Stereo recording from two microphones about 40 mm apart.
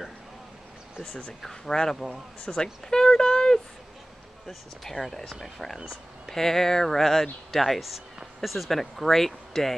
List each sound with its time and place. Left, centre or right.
1.4 s speech: centre
4.8 s speech: centre